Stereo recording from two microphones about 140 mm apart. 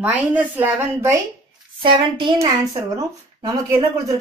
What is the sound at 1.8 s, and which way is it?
Speech, 40° right (ahead or behind).